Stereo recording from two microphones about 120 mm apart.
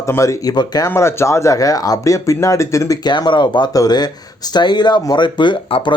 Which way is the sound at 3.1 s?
40° left (ahead or behind).